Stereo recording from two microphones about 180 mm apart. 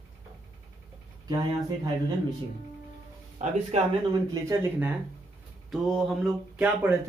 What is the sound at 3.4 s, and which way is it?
Speech, 40° right (ahead or behind).